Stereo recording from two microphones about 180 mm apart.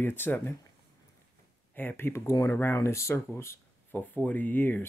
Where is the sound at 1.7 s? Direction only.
10° left (ahead or behind).